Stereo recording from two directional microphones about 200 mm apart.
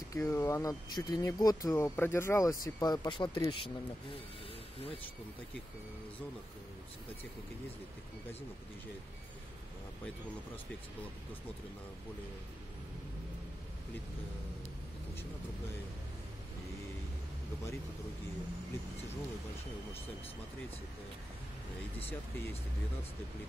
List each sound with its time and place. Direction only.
0.1 s speech: 15° left (ahead or behind)